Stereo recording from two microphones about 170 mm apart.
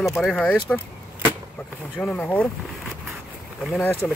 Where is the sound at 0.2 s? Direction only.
5° left (ahead or behind).